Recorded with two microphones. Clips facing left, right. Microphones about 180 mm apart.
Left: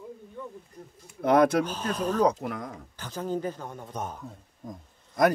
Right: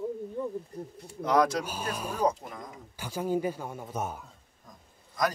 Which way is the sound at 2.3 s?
70° left (ahead or behind).